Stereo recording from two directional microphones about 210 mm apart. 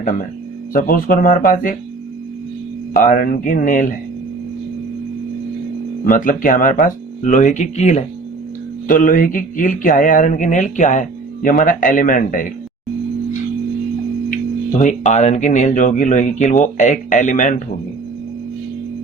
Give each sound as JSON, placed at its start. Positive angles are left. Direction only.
{"t": 0.0, "sound": "speech", "side_deg": 40}
{"t": 2.9, "sound": "speech", "side_deg": 40}
{"t": 6.1, "sound": "speech", "side_deg": 40}
{"t": 14.8, "sound": "speech", "side_deg": 35}